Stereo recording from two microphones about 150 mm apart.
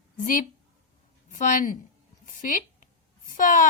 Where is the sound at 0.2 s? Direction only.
65° left (ahead or behind).